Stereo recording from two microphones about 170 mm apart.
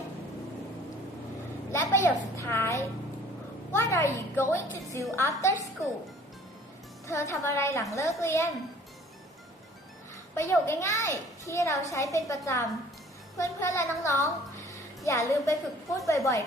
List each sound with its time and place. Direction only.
1.7 s a woman's voice: 15° left (ahead or behind)
7.1 s a child's voice: 15° left (ahead or behind)
10.3 s a child's voice: 15° left (ahead or behind)